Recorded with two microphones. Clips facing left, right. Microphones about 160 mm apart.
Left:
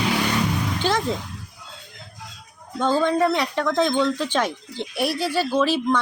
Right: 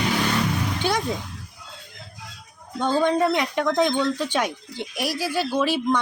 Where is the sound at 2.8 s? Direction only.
15° right (ahead or behind).